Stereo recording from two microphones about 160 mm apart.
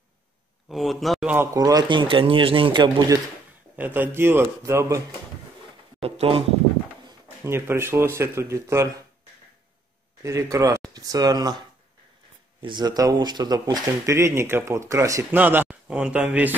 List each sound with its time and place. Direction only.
0.7 s speech: centre (ahead or behind)
1.3 s speech: 15° right (ahead or behind)
3.7 s speech: 10° right (ahead or behind)
6.0 s speech: 35° right (ahead or behind)
7.4 s speech: 15° right (ahead or behind)
10.2 s speech: 20° right (ahead or behind)
12.6 s speech: 25° right (ahead or behind); by 16.5 s 10° right (ahead or behind)